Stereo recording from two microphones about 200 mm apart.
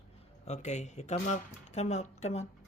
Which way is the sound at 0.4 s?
35° left (ahead or behind).